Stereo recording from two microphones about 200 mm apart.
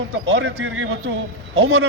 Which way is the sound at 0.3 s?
90° right.